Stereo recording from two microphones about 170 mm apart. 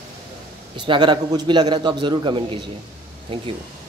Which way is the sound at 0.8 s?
25° right (ahead or behind).